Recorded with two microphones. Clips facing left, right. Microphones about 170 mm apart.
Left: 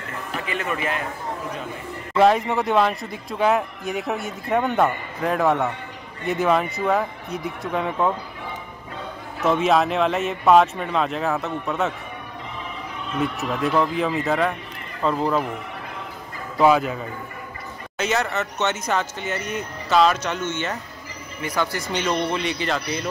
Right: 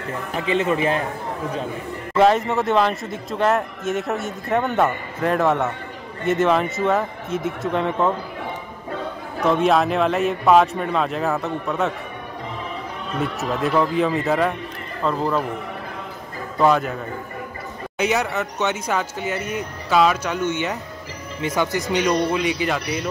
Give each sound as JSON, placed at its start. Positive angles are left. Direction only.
{"t": 0.5, "sound": "a man's voice", "side_deg": -25}
{"t": 2.1, "sound": "speech", "side_deg": 0}
{"t": 9.5, "sound": "speech", "side_deg": 0}
{"t": 13.2, "sound": "speech", "side_deg": 0}
{"t": 16.5, "sound": "speech", "side_deg": 5}
{"t": 17.9, "sound": "a man's voice", "side_deg": -15}